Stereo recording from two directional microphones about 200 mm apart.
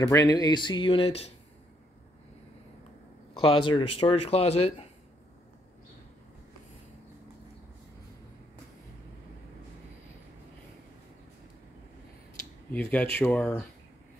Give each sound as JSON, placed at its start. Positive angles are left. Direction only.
{"t": 0.0, "sound": "speech", "side_deg": 15}
{"t": 3.3, "sound": "speech", "side_deg": 25}
{"t": 12.7, "sound": "speech", "side_deg": 10}